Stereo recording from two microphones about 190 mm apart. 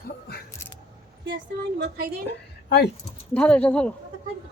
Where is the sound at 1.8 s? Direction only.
55° right (ahead or behind).